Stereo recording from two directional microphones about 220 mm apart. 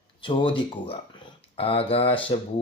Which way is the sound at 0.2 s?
20° left (ahead or behind).